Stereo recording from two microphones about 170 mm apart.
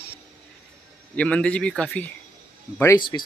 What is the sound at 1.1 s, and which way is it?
Speech, 5° left (ahead or behind).